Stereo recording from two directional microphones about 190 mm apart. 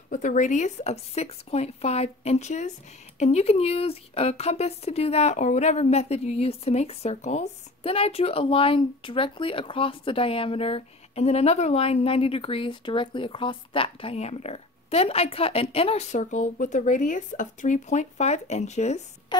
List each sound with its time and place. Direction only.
0.1 s speech: 40° left (ahead or behind)